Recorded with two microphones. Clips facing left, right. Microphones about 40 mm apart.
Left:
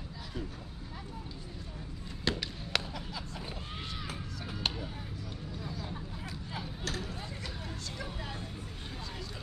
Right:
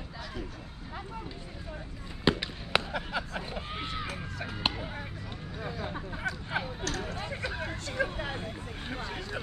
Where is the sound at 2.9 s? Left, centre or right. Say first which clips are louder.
Right 8 dB; right.